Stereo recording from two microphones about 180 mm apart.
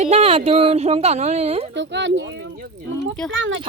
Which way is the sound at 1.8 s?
85° right.